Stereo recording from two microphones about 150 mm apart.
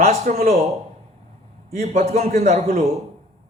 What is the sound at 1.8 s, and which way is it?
Speech, 75° right (ahead or behind).